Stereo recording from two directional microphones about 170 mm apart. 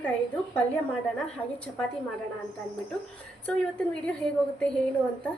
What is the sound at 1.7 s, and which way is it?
Speech, 5° left (ahead or behind).